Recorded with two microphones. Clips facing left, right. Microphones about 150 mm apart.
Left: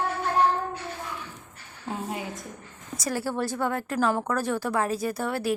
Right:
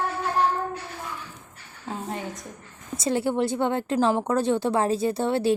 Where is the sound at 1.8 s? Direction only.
5° left (ahead or behind).